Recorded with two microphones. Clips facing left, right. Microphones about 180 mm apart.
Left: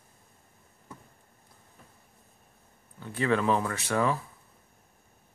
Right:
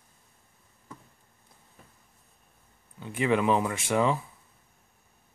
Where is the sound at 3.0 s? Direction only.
15° right (ahead or behind).